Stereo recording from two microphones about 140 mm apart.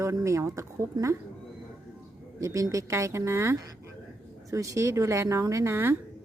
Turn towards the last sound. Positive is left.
turn(degrees=-20)  # may be behind; listen again after turning